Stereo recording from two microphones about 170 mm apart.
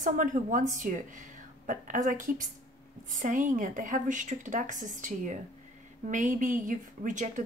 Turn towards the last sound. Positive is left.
turn(degrees=-45)  # may be behind; listen again after turning